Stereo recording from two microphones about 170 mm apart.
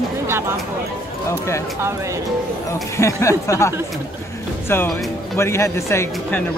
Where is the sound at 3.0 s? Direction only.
15° left (ahead or behind).